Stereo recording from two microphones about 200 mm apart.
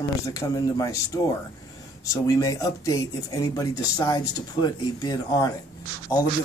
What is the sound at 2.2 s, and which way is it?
Speech, 15° left (ahead or behind).